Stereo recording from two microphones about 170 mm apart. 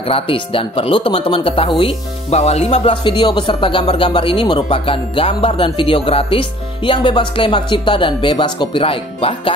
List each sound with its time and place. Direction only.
0.1 s speech: 30° left (ahead or behind)